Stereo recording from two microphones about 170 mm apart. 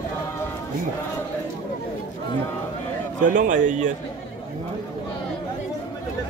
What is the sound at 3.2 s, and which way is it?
Speech, 50° right (ahead or behind).